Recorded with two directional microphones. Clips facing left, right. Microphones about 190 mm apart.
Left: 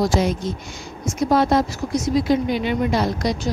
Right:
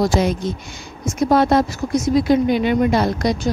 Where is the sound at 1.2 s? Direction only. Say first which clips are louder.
Right 2 dB; 60° right (ahead or behind).